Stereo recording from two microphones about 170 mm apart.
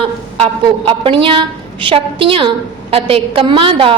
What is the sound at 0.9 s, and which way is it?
A woman's voice, 30° right (ahead or behind).